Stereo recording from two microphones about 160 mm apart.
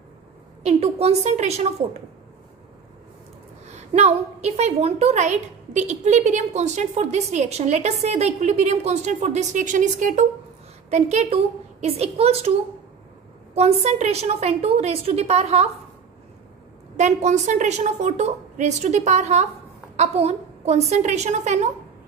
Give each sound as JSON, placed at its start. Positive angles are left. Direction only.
{"t": 0.7, "sound": "a woman's voice", "side_deg": -40}
{"t": 3.6, "sound": "a woman's voice", "side_deg": -45}
{"t": 13.6, "sound": "a woman's voice", "side_deg": -40}
{"t": 16.9, "sound": "a woman's voice", "side_deg": -45}